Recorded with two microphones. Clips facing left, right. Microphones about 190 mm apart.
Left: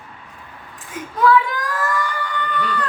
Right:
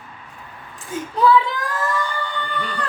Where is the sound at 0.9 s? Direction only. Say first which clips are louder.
Even; 30° right (ahead or behind).